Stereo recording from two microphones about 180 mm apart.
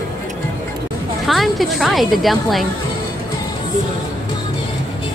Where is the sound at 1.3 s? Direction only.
Centre (ahead or behind).